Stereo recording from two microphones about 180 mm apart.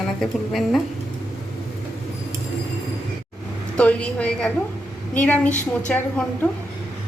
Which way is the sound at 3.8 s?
5° left (ahead or behind).